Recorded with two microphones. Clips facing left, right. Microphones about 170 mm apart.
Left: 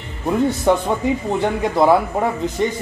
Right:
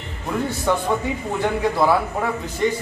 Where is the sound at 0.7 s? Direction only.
20° left (ahead or behind).